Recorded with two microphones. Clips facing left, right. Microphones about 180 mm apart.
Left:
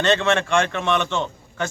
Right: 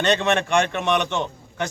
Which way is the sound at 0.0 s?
20° right (ahead or behind).